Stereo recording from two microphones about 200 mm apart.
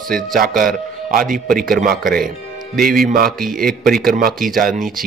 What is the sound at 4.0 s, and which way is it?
A man's voice, 45° right (ahead or behind).